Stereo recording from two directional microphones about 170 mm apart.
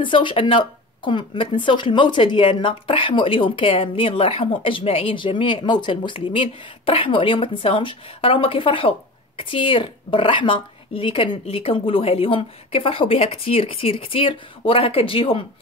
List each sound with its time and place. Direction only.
0.0 s speech: 30° left (ahead or behind)